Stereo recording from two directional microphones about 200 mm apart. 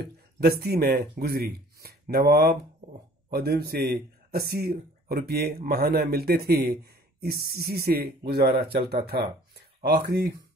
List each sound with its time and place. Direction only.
0.4 s speech: 50° right (ahead or behind)